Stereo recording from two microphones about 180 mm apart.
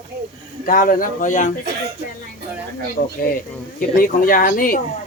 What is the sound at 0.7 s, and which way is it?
Speech, 50° left (ahead or behind).